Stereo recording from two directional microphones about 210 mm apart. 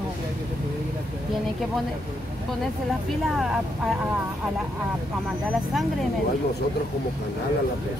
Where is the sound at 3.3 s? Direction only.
Centre (ahead or behind).